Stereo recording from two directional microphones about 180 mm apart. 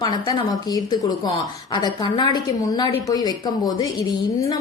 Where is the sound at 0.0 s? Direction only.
25° left (ahead or behind).